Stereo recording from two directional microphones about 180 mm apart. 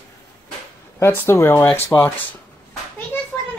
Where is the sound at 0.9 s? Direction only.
15° left (ahead or behind).